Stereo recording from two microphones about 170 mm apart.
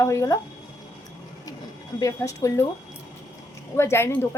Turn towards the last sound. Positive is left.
turn(degrees=15)  # may be behind; listen again after turning